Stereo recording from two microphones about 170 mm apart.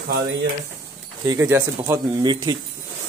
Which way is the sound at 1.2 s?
15° right (ahead or behind).